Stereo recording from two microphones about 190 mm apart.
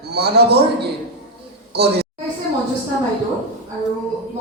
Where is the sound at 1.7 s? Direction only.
60° right (ahead or behind).